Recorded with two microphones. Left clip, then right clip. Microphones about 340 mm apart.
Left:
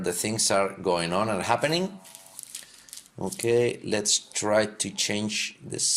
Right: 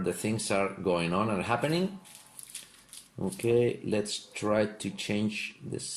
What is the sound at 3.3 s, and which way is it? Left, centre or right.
Speech, left.